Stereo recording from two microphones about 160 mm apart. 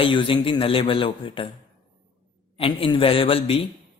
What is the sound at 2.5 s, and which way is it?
Speech, 35° left (ahead or behind).